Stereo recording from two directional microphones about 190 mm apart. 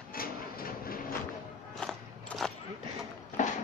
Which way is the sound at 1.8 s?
5° left (ahead or behind).